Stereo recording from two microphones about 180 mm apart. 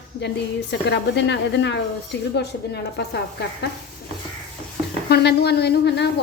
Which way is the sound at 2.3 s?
65° left (ahead or behind).